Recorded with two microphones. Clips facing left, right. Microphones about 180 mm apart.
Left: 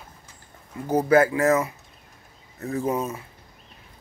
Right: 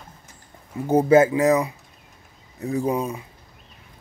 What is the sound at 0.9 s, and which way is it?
Speech, 25° right (ahead or behind).